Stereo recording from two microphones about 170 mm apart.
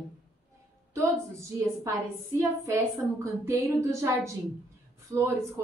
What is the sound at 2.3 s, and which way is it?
Speech, 15° right (ahead or behind).